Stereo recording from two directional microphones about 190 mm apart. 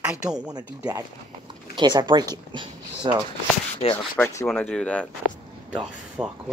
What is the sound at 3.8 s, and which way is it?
Rub, 30° left (ahead or behind).